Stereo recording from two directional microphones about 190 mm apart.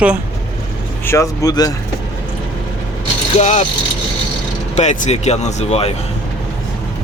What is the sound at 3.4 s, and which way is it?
Speech, 35° left (ahead or behind).